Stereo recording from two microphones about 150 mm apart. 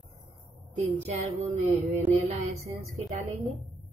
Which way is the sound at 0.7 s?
50° right (ahead or behind).